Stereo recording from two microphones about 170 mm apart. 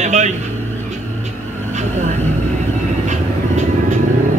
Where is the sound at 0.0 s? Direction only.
45° right (ahead or behind).